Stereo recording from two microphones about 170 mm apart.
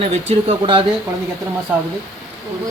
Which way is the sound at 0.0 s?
35° right (ahead or behind).